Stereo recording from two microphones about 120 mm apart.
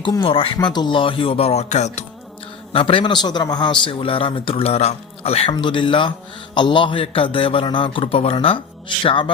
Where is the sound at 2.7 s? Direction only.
50° left (ahead or behind).